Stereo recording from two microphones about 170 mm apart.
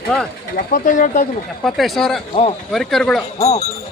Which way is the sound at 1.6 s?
Centre (ahead or behind).